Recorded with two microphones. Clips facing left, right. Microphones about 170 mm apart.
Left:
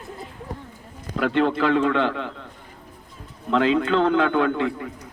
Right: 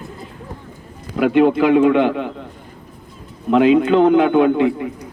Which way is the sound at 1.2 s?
10° right (ahead or behind).